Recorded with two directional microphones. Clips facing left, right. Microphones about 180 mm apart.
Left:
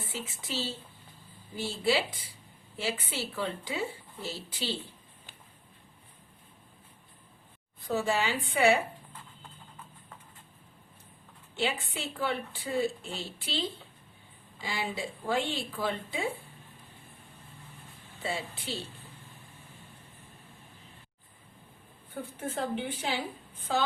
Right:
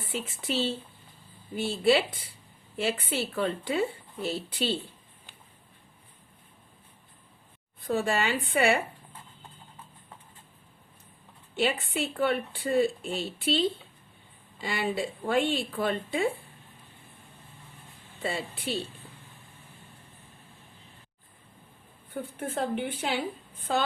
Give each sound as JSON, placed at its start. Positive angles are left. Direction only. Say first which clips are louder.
{"t": 0.0, "sound": "a woman's voice", "louder": "right 5 dB", "side_deg": -60}
{"t": 7.8, "sound": "a woman's voice", "louder": "right 2 dB", "side_deg": -55}
{"t": 11.6, "sound": "a woman's voice", "louder": "right 5 dB", "side_deg": -60}
{"t": 18.2, "sound": "a woman's voice", "louder": "right 3 dB", "side_deg": -60}
{"t": 22.1, "sound": "a woman's voice", "louder": "right 3 dB", "side_deg": -55}